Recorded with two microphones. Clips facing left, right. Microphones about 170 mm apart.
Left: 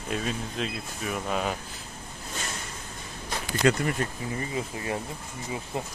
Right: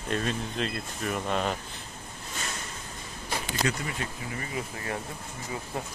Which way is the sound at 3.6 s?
55° left (ahead or behind).